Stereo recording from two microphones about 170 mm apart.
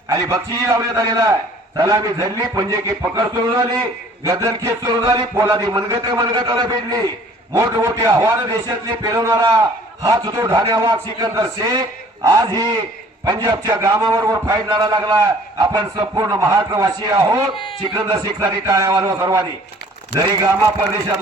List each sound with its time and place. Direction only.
0.1 s a man's voice: 20° right (ahead or behind)